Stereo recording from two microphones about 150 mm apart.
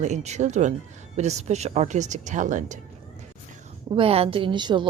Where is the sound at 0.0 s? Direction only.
50° right (ahead or behind).